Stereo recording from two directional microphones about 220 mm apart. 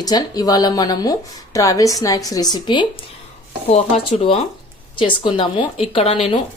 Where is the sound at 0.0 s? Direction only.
15° left (ahead or behind).